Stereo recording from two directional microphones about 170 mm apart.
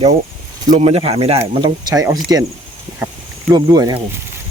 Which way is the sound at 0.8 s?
40° right (ahead or behind).